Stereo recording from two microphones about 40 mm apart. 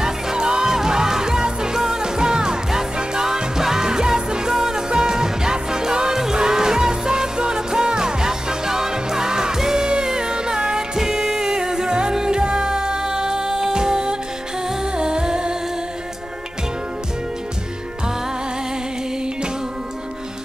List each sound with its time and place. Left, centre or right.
0.0 s music: centre
14.7 s humming: centre